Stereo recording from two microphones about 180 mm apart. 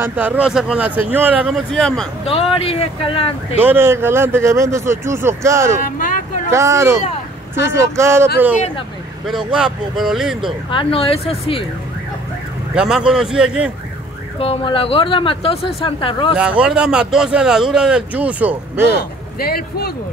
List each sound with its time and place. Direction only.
0.0 s speech: 10° right (ahead or behind)
2.6 s speech: 35° left (ahead or behind)
3.5 s speech: 10° right (ahead or behind)
5.9 s vehicle: 50° left (ahead or behind)
6.5 s speech: 15° right (ahead or behind)
9.2 s speech: centre (ahead or behind)
10.7 s speech: 30° left (ahead or behind)
12.7 s speech: 5° right (ahead or behind)
14.4 s speech: 30° left (ahead or behind)
16.3 s speech: 5° right (ahead or behind)
19.3 s speech: 60° left (ahead or behind)